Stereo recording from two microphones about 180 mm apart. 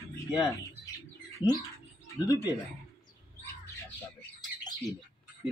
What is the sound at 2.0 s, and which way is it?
Speech, 20° left (ahead or behind).